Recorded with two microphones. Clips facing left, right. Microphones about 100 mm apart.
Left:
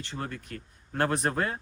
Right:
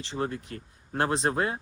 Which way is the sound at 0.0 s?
30° right (ahead or behind).